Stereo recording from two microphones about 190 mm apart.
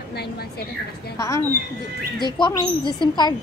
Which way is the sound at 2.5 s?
20° left (ahead or behind).